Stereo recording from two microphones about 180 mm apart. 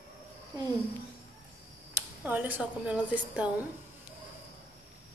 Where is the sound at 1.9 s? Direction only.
10° right (ahead or behind).